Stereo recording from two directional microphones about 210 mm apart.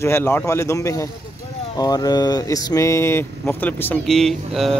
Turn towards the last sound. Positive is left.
turn(degrees=0)  # may be behind; listen again after turning